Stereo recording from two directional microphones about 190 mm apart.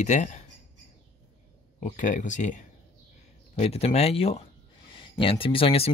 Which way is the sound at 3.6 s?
35° left (ahead or behind).